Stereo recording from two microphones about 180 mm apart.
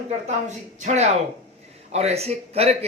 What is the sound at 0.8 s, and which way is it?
A man's voice, 40° right (ahead or behind).